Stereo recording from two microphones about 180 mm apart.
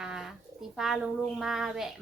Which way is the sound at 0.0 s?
5° right (ahead or behind).